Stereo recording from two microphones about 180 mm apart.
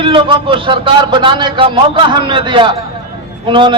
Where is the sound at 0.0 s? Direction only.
25° right (ahead or behind).